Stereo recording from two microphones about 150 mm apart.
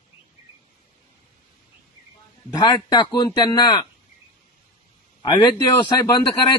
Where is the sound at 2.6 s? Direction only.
30° left (ahead or behind).